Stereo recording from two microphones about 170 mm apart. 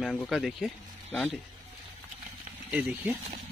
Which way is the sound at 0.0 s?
Centre (ahead or behind).